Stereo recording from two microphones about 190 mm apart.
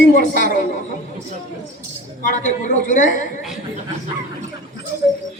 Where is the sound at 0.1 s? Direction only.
40° left (ahead or behind).